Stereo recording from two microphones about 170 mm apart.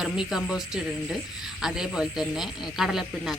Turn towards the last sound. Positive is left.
turn(degrees=0)  # may be behind; listen again after turning